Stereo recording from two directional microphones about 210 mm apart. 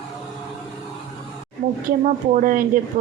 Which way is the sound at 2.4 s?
40° right (ahead or behind).